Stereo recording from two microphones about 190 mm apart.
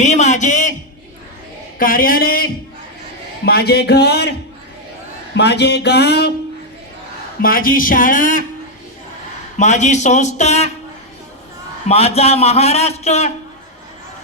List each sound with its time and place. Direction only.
0.0 s a sound: 40° left (ahead or behind)
1.8 s speech: 50° left (ahead or behind)
3.4 s music: 55° left (ahead or behind)
5.4 s music: 60° left (ahead or behind)
7.4 s speech: 50° left (ahead or behind)
9.6 s a man's voice: 40° left (ahead or behind)
11.9 s a man's voice: 35° left (ahead or behind)